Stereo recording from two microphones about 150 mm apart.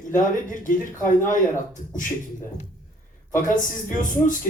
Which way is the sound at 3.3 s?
60° left (ahead or behind).